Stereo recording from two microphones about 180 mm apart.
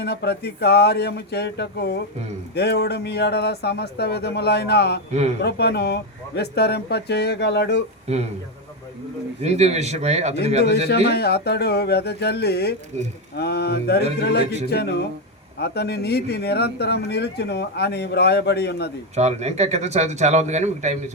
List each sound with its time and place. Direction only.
0.0 s speech: 65° left (ahead or behind)
8.0 s speech: 35° right (ahead or behind)
9.4 s a man's voice: 35° right (ahead or behind)
11.1 s speech: 65° left (ahead or behind)
19.1 s a man's voice: 40° right (ahead or behind)